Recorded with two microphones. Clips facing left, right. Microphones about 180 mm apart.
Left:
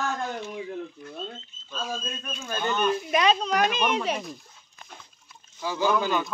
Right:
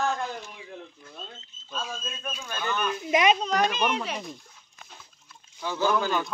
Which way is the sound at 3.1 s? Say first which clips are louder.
Right 3 dB; 20° right (ahead or behind).